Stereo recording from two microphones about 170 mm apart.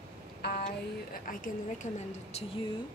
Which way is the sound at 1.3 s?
55° left (ahead or behind).